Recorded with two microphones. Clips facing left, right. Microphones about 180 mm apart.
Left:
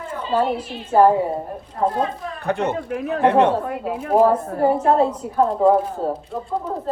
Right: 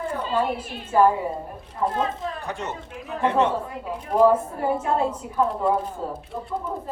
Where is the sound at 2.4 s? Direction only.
60° left (ahead or behind).